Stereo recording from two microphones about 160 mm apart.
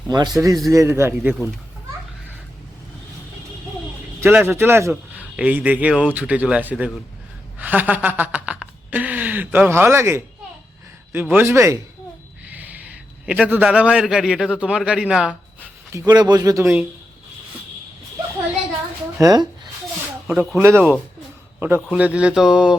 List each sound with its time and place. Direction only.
0.1 s a man's voice: 20° right (ahead or behind)
4.2 s a man's voice: 15° right (ahead or behind)
7.6 s a sound: 10° right (ahead or behind)
11.1 s a man's voice: 10° right (ahead or behind)
13.2 s a man's voice: 10° right (ahead or behind)
15.9 s speech: 20° right (ahead or behind)
19.2 s speech: 25° right (ahead or behind)
20.2 s a man's voice: 10° right (ahead or behind)